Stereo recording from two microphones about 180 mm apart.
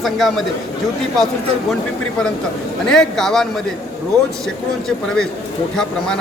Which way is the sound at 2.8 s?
5° left (ahead or behind).